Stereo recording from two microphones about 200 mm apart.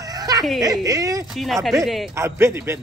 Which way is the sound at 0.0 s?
20° right (ahead or behind).